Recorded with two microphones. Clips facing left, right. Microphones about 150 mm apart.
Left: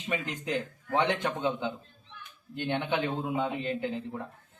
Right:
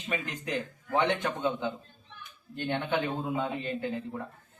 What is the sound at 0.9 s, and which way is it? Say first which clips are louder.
A man's voice: even; 20° left (ahead or behind).